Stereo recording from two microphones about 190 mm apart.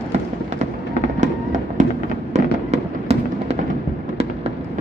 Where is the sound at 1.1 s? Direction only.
40° right (ahead or behind).